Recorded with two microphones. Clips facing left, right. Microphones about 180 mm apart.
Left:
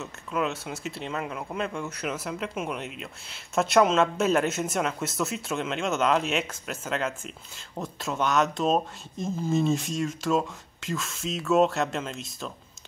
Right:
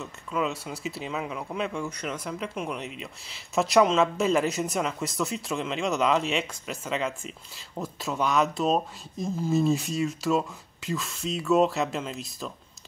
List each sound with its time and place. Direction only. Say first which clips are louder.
0.0 s speech: even; centre (ahead or behind)